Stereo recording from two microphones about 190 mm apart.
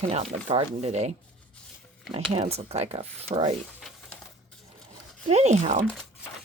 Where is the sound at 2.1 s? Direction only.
35° right (ahead or behind).